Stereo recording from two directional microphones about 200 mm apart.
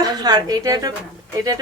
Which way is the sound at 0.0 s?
20° right (ahead or behind).